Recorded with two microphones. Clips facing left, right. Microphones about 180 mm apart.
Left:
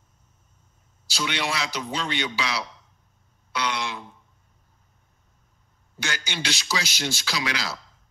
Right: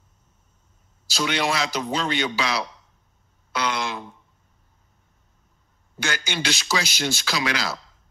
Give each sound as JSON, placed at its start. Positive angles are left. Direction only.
{"t": 1.1, "sound": "a man's voice", "side_deg": -45}
{"t": 3.5, "sound": "a sound", "side_deg": -45}
{"t": 5.9, "sound": "a man's voice", "side_deg": -50}